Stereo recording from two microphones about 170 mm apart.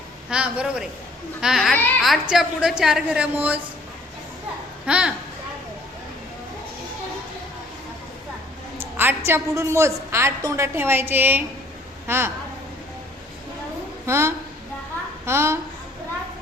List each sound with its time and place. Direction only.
0.3 s a woman's voice: 5° right (ahead or behind)
4.9 s a woman's voice: 5° right (ahead or behind)
8.8 s a woman's voice: 10° right (ahead or behind)
14.1 s a woman's voice: 15° right (ahead or behind)